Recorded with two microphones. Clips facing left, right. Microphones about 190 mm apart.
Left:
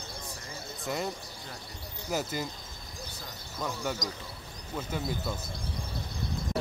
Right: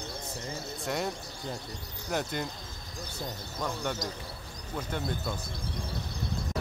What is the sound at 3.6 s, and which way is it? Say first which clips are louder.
Speech: even; 5° left (ahead or behind).